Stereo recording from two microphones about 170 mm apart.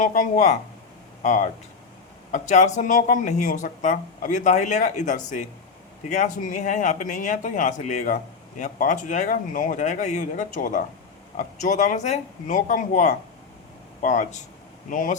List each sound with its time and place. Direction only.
0.0 s speech: 50° left (ahead or behind)